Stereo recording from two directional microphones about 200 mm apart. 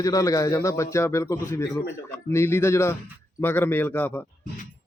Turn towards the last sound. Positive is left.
turn(degrees=10)  # may be behind; listen again after turning